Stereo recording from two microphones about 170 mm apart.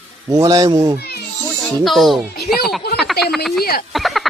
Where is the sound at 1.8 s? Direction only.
Centre (ahead or behind).